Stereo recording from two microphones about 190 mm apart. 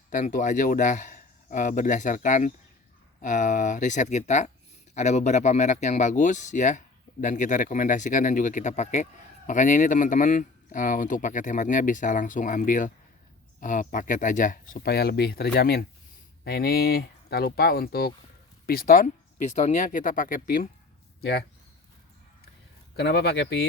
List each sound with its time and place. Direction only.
0.1 s speech: 45° left (ahead or behind)
21.2 s speech: 60° left (ahead or behind)
23.0 s speech: 60° left (ahead or behind)